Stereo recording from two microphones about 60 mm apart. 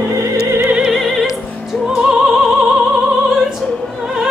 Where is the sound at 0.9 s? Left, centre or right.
Centre.